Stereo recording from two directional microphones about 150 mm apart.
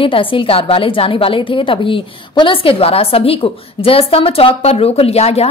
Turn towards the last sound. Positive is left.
turn(degrees=45)  # may be behind; listen again after turning